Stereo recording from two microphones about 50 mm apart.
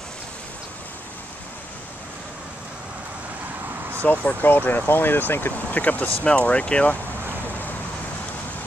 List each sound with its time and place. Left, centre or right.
4.0 s speech: left
5.8 s speech: left
6.4 s speech: left